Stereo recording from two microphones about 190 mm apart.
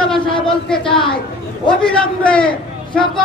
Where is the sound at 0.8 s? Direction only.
25° left (ahead or behind).